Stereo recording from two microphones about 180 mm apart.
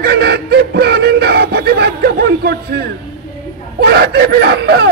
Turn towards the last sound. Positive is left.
turn(degrees=-65)  # may be behind; listen again after turning